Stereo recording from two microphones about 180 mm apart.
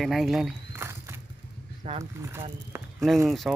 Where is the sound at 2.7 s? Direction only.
15° right (ahead or behind).